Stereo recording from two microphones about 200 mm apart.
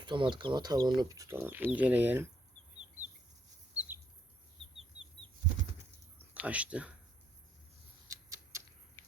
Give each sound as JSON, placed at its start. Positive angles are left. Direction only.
{"t": 0.0, "sound": "speech", "side_deg": -25}
{"t": 3.8, "sound": "bird", "side_deg": -10}
{"t": 6.1, "sound": "speech", "side_deg": -5}
{"t": 8.0, "sound": "tick-tock", "side_deg": -15}
{"t": 9.0, "sound": "a sound", "side_deg": 10}